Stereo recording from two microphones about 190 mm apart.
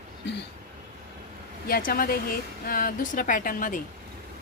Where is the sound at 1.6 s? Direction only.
50° left (ahead or behind).